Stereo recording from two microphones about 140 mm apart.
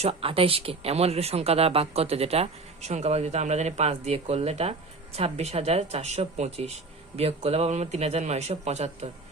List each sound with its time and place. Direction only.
0.0 s speech: 45° right (ahead or behind)